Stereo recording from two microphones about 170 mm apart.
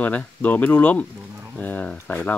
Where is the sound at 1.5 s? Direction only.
10° left (ahead or behind).